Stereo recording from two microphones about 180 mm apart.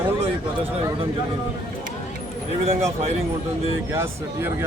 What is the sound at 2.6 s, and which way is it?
Speech, 35° right (ahead or behind).